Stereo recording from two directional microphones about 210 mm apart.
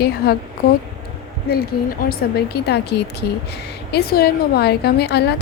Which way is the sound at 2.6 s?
50° left (ahead or behind).